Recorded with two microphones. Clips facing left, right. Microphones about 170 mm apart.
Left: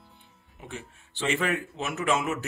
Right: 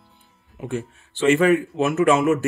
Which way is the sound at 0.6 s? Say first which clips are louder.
Right 13 dB; 50° right (ahead or behind).